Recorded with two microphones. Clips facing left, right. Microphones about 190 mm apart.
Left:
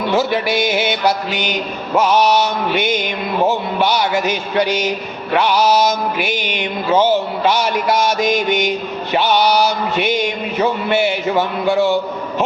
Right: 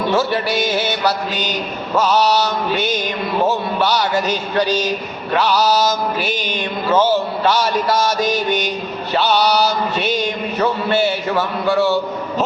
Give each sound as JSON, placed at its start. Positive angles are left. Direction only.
{"t": 0.3, "sound": "a man's voice", "side_deg": 15}
{"t": 3.9, "sound": "a man's voice", "side_deg": 10}
{"t": 6.6, "sound": "a man's voice", "side_deg": 15}
{"t": 10.6, "sound": "a man's voice", "side_deg": 15}